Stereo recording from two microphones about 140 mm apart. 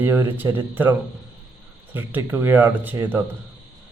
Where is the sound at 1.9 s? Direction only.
15° right (ahead or behind).